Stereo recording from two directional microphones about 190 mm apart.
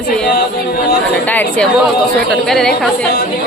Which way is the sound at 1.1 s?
10° left (ahead or behind).